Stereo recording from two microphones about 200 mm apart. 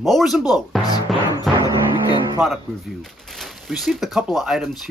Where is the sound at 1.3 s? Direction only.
20° left (ahead or behind).